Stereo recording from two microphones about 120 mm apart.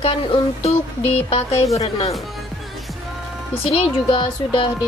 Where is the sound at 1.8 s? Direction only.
60° left (ahead or behind).